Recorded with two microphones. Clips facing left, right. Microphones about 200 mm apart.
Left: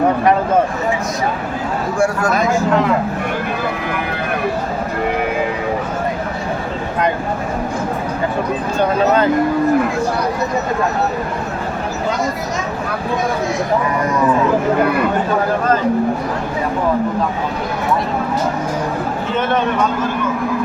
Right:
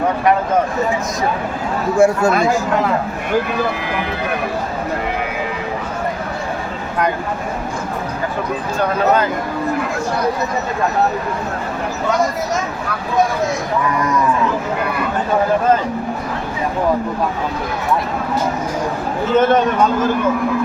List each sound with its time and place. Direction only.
2.0 s speech: 25° right (ahead or behind)